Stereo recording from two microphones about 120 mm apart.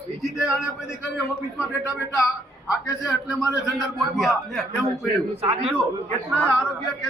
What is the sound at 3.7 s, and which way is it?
Speech, centre (ahead or behind).